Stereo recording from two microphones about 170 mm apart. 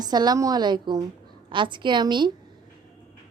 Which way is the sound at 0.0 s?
25° right (ahead or behind).